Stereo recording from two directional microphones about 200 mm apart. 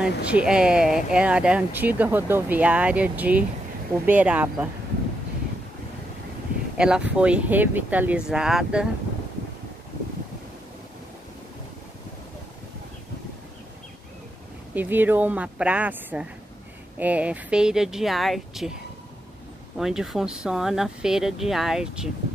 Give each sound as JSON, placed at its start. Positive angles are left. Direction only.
{"t": 0.0, "sound": "speech", "side_deg": -5}
{"t": 6.8, "sound": "speech", "side_deg": -5}
{"t": 14.7, "sound": "speech", "side_deg": -10}
{"t": 19.8, "sound": "speech", "side_deg": 0}